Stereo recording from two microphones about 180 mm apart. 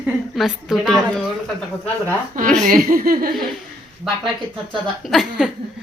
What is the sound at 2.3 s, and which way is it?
Speech, 50° right (ahead or behind).